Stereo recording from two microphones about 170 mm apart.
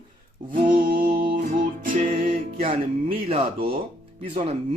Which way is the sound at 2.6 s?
35° right (ahead or behind).